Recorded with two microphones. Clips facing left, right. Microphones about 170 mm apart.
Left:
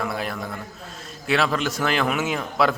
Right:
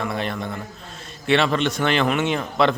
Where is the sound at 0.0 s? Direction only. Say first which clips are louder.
Right 2 dB; 5° left (ahead or behind).